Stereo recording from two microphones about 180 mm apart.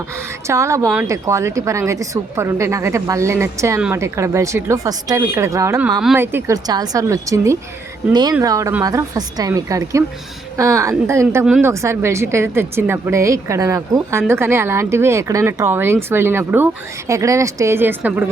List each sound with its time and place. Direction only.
0.4 s a woman's voice: 15° right (ahead or behind)